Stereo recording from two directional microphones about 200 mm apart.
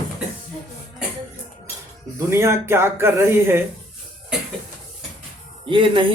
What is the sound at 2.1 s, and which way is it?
Speech, 15° right (ahead or behind).